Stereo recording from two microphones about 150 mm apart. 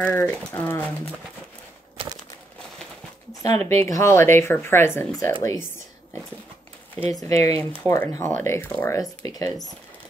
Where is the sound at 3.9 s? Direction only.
20° left (ahead or behind).